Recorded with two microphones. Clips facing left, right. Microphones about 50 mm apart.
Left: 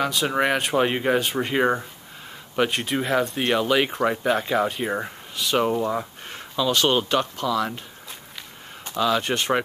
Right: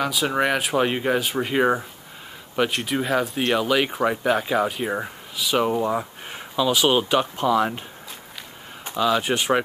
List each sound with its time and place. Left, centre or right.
0.0 s speech: centre
7.3 s speech: right
8.9 s speech: centre